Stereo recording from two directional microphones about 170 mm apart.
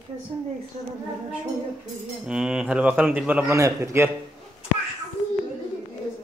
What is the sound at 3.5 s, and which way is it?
Speech, 15° right (ahead or behind).